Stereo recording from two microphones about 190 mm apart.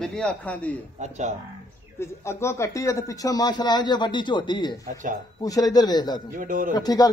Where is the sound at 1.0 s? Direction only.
40° right (ahead or behind).